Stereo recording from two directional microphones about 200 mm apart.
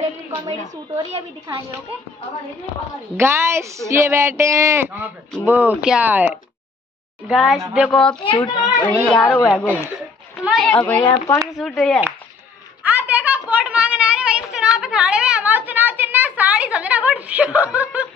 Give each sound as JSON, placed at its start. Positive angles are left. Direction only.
{"t": 0.5, "sound": "a woman's voice", "side_deg": -25}
{"t": 3.2, "sound": "a woman's voice", "side_deg": -15}
{"t": 11.0, "sound": "speech", "side_deg": 20}
{"t": 11.3, "sound": "speech", "side_deg": 0}
{"t": 12.8, "sound": "a sound", "side_deg": -10}